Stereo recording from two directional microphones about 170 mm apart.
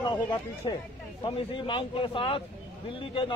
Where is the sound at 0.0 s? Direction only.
25° left (ahead or behind).